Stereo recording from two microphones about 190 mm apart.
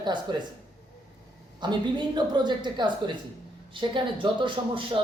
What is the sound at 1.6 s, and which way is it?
Speech, 25° right (ahead or behind).